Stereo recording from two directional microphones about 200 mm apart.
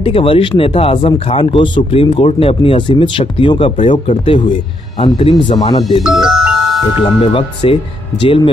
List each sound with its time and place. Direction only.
0.0 s speech: 25° left (ahead or behind)
6.0 s music: centre (ahead or behind)
7.3 s speech: 25° left (ahead or behind)